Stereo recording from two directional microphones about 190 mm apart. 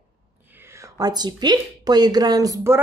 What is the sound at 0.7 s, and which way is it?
A child's voice, 15° right (ahead or behind).